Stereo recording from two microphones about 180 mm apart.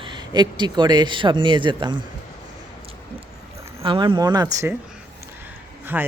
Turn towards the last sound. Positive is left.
turn(degrees=-10)  # may be behind; listen again after turning